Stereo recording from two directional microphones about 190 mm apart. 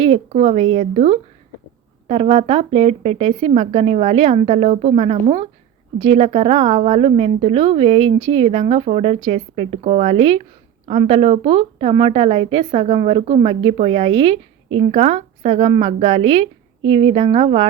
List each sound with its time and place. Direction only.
0.0 s speech: 30° right (ahead or behind)